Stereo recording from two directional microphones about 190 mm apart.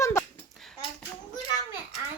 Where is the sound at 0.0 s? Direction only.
15° left (ahead or behind).